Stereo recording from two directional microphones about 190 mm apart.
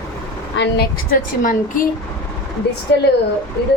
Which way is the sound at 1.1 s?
45° left (ahead or behind).